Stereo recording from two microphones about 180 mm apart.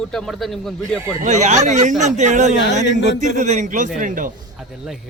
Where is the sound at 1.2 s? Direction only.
40° right (ahead or behind).